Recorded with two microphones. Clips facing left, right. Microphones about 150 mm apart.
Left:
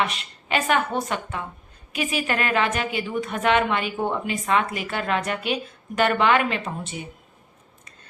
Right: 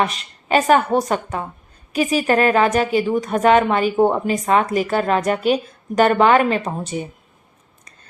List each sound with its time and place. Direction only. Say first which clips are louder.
0.0 s a woman's voice: right 5 dB; 40° right (ahead or behind)